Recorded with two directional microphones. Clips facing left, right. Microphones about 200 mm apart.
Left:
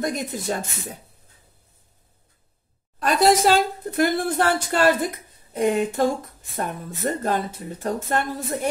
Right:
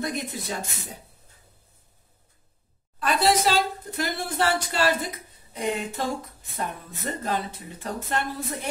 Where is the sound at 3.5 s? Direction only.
55° left (ahead or behind).